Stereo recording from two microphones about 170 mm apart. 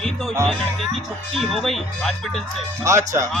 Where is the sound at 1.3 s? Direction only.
Centre (ahead or behind).